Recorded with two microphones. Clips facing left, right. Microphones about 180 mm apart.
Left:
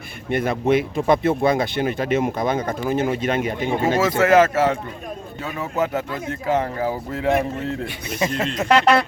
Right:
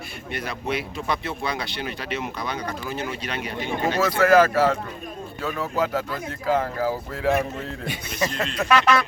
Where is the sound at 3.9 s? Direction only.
25° left (ahead or behind).